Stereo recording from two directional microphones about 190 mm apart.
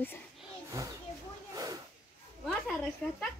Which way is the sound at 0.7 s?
15° right (ahead or behind).